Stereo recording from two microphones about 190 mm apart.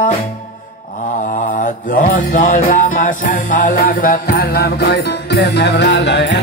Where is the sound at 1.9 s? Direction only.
45° left (ahead or behind).